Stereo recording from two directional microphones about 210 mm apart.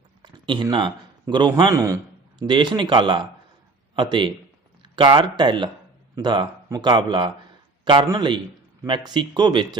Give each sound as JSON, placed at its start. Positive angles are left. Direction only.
{"t": 0.2, "sound": "speech", "side_deg": -20}